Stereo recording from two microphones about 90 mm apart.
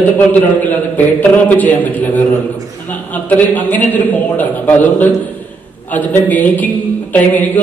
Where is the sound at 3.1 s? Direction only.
20° left (ahead or behind).